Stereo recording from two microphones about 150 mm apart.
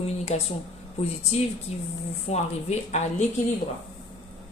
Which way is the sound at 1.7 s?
45° left (ahead or behind).